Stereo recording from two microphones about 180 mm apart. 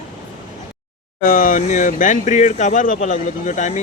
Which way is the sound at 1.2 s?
50° left (ahead or behind).